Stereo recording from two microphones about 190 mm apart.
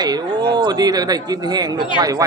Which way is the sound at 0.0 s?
20° right (ahead or behind).